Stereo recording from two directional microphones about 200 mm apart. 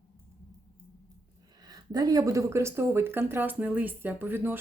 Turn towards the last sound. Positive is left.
turn(degrees=-10)  # may be behind; listen again after turning